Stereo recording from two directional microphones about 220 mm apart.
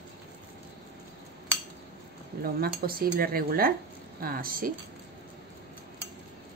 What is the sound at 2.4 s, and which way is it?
Speech, 45° right (ahead or behind).